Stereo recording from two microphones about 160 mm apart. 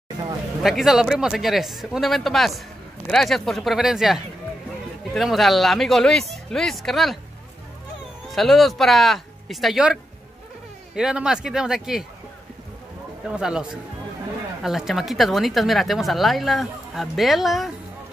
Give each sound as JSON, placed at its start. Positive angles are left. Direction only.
{"t": 0.6, "sound": "speech", "side_deg": 0}
{"t": 8.4, "sound": "speech", "side_deg": 0}
{"t": 11.0, "sound": "speech", "side_deg": -5}
{"t": 13.3, "sound": "speech", "side_deg": -5}